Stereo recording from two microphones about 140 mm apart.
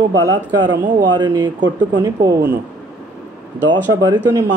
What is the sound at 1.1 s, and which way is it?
Speech, 30° right (ahead or behind).